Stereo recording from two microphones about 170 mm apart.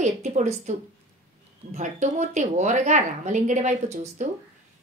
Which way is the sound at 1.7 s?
45° right (ahead or behind).